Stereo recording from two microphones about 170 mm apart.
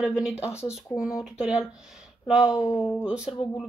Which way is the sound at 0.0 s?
5° right (ahead or behind).